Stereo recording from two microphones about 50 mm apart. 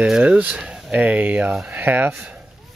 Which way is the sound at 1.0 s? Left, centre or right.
Right.